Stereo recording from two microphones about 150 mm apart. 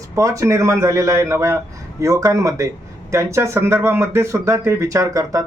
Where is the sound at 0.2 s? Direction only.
20° right (ahead or behind).